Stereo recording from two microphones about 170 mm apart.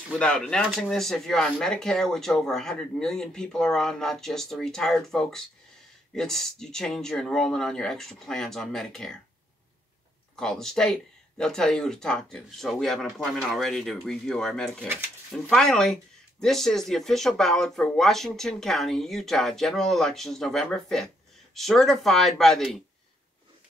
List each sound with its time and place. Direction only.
0.2 s speech: 5° left (ahead or behind)
10.3 s speech: 5° left (ahead or behind)